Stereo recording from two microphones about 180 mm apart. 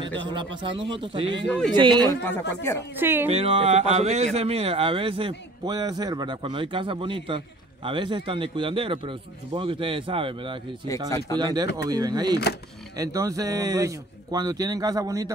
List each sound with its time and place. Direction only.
0.3 s speech: 25° right (ahead or behind)
2.2 s speech: 10° left (ahead or behind)
3.0 s speech: 10° right (ahead or behind)
3.3 s speech: 30° right (ahead or behind)
11.1 s speech: 15° left (ahead or behind)
11.3 s speech: 20° right (ahead or behind)